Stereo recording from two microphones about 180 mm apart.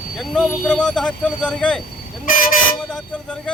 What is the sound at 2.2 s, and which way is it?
Vehicle, 50° left (ahead or behind).